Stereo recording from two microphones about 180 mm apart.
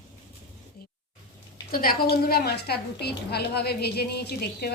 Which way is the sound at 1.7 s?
55° left (ahead or behind).